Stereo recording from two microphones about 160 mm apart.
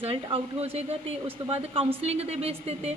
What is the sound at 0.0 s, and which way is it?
A woman's voice, 35° right (ahead or behind).